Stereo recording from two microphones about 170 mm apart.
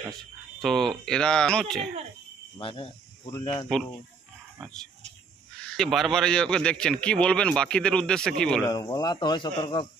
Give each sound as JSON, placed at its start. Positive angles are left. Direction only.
{"t": 0.6, "sound": "speech", "side_deg": 0}
{"t": 2.5, "sound": "speech", "side_deg": 30}
{"t": 3.6, "sound": "speech", "side_deg": 0}
{"t": 5.6, "sound": "speech", "side_deg": 5}
{"t": 8.6, "sound": "speech", "side_deg": 25}